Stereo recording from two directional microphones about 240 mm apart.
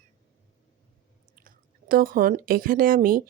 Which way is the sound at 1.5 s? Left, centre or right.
Right.